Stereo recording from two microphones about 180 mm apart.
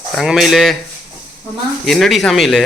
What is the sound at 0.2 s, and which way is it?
Speech, centre (ahead or behind).